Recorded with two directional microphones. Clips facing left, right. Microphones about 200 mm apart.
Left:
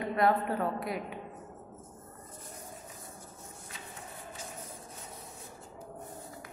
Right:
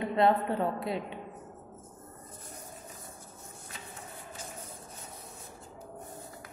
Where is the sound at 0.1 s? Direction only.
25° right (ahead or behind).